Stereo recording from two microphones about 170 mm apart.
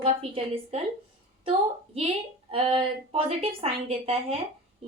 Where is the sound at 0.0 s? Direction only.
35° right (ahead or behind).